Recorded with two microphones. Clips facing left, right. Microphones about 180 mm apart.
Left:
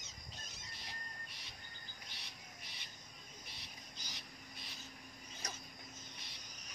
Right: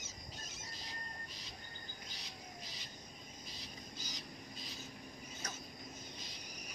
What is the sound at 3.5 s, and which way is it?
Insect, 65° left (ahead or behind).